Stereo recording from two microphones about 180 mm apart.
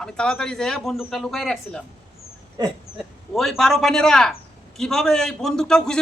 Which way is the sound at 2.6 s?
25° right (ahead or behind).